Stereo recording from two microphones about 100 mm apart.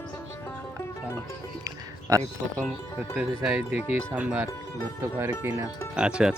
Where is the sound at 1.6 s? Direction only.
35° right (ahead or behind).